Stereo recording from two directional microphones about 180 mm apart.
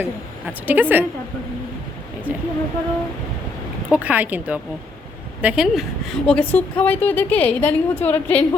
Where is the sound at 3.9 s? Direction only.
10° right (ahead or behind).